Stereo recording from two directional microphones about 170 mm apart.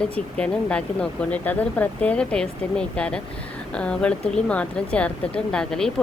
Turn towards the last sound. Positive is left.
turn(degrees=5)  # may be behind; listen again after turning